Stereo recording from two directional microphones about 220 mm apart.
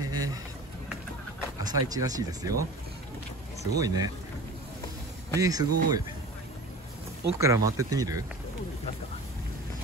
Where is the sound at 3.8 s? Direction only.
15° right (ahead or behind).